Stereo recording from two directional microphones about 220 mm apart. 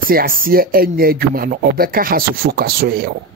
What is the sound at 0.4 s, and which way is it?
Speech, 40° right (ahead or behind).